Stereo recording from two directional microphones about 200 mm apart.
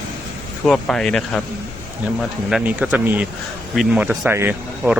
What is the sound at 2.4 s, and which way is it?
Speech, 5° right (ahead or behind).